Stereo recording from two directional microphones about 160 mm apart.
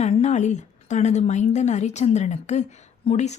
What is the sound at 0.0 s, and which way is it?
A woman's voice, 45° left (ahead or behind).